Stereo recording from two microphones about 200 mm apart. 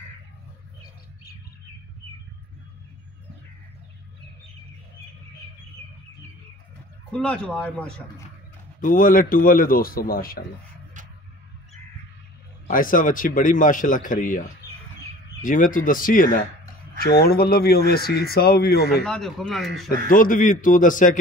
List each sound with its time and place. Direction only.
7.1 s speech: 5° left (ahead or behind)
8.8 s speech: 45° left (ahead or behind)
12.6 s a man's voice: 45° left (ahead or behind)
15.4 s speech: 40° left (ahead or behind)
19.0 s speech: centre (ahead or behind)
20.1 s a man's voice: 45° left (ahead or behind)